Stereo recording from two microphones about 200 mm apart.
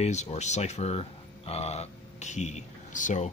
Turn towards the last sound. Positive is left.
turn(degrees=40)  # may be behind; listen again after turning